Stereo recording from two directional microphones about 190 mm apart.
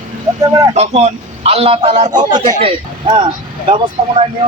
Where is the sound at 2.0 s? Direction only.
20° right (ahead or behind).